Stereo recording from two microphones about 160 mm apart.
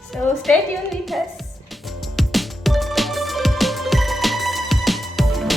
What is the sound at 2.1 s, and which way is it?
Music, centre (ahead or behind).